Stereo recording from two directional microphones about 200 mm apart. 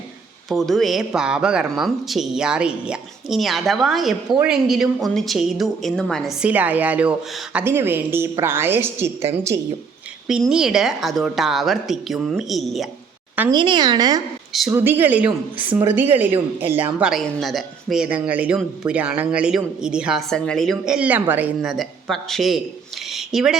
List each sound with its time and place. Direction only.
0.5 s speech: centre (ahead or behind)
10.2 s speech: 5° right (ahead or behind)
13.5 s speech: 20° right (ahead or behind)
14.7 s a woman's voice: 10° right (ahead or behind)
23.1 s a sound: centre (ahead or behind)